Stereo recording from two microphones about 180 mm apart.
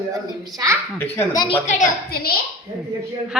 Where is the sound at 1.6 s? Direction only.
40° left (ahead or behind).